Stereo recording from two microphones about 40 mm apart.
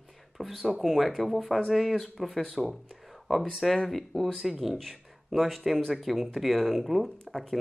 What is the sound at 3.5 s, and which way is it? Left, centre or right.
Speech, centre.